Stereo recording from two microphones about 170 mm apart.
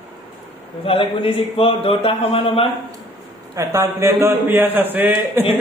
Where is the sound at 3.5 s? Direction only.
15° right (ahead or behind).